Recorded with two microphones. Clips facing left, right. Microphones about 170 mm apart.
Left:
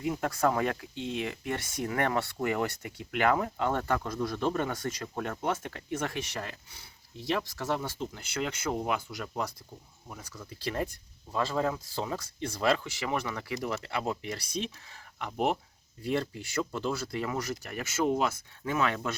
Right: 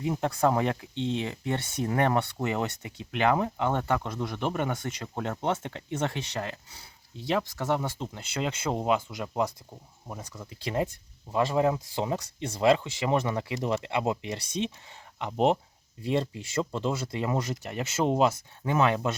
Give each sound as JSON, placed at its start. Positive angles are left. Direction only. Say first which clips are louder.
{"t": 0.0, "sound": "speech", "louder": "right 2 dB", "side_deg": -25}
{"t": 10.5, "sound": "speech", "louder": "right 3 dB", "side_deg": -15}